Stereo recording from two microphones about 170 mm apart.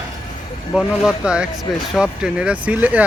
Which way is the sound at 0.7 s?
5° right (ahead or behind).